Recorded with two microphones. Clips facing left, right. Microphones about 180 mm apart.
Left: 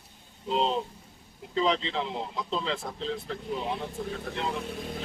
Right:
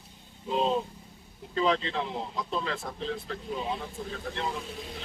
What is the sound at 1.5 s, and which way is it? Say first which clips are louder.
A man's voice: even; 15° left (ahead or behind).